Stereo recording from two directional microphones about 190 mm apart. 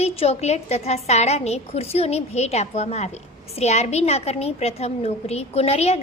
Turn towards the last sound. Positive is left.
turn(degrees=35)  # may be behind; listen again after turning